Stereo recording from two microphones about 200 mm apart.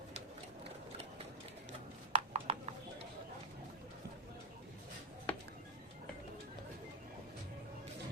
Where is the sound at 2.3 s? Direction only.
35° right (ahead or behind).